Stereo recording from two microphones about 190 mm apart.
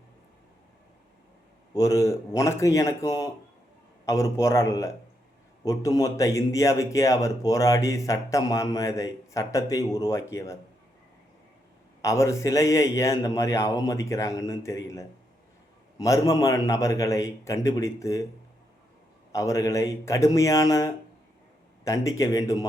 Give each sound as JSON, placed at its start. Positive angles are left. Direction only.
{"t": 1.7, "sound": "speech", "side_deg": 15}
{"t": 12.0, "sound": "speech", "side_deg": 15}
{"t": 19.3, "sound": "speech", "side_deg": 15}